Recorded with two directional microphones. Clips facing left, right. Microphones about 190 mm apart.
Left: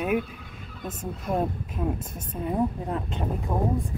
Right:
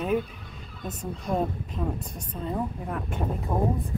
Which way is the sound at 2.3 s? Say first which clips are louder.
Left 4 dB; 20° left (ahead or behind).